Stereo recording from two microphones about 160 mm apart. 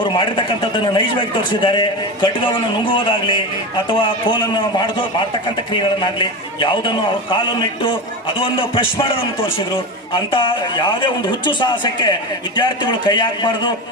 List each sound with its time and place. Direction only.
0.0 s a man's voice: 30° left (ahead or behind)